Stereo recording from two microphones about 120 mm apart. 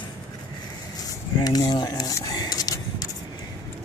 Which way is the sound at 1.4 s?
35° left (ahead or behind).